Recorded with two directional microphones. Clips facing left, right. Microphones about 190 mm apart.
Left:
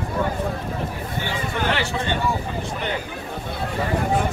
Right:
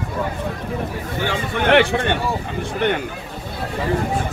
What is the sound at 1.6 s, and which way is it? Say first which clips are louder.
A man's voice: right 10 dB; 65° right (ahead or behind).